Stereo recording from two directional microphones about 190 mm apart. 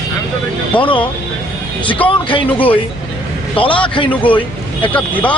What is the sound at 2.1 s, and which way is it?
A man's voice, 25° left (ahead or behind).